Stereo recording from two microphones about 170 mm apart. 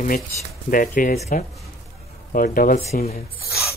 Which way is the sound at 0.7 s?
50° left (ahead or behind).